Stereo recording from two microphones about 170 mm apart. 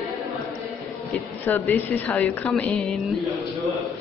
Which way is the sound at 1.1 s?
5° left (ahead or behind).